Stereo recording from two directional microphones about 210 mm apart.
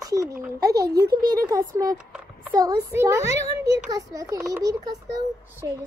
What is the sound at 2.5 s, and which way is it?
A child's voice, 15° right (ahead or behind).